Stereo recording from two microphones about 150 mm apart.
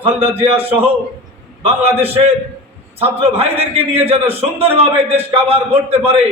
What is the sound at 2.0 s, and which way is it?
A man's voice, 40° right (ahead or behind).